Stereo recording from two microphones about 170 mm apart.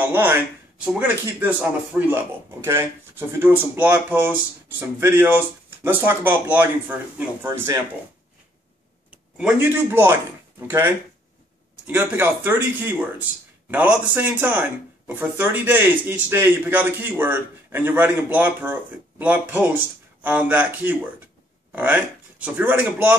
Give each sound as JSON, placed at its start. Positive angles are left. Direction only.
{"t": 0.1, "sound": "speech", "side_deg": -10}
{"t": 9.1, "sound": "speech", "side_deg": -10}
{"t": 11.9, "sound": "speech", "side_deg": -10}